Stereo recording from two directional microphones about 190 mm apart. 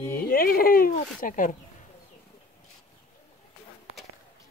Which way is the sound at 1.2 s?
45° left (ahead or behind).